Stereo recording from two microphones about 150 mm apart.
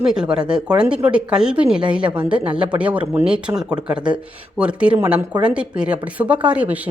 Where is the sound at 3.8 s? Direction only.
5° right (ahead or behind).